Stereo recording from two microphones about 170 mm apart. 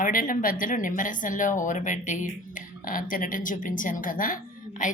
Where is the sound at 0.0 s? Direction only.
55° left (ahead or behind).